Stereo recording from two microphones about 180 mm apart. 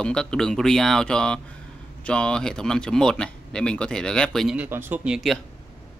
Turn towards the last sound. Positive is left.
turn(degrees=0)  # may be behind; listen again after turning